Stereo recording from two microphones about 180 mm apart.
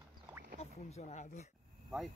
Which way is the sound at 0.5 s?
40° left (ahead or behind).